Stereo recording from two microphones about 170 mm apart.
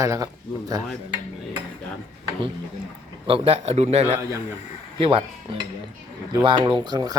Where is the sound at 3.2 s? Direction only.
35° right (ahead or behind).